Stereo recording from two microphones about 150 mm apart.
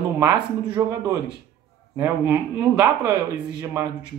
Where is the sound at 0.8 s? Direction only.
15° right (ahead or behind).